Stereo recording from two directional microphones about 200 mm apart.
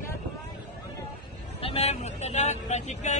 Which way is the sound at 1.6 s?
30° left (ahead or behind).